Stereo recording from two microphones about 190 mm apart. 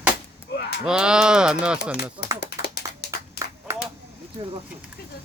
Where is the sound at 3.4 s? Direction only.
15° right (ahead or behind).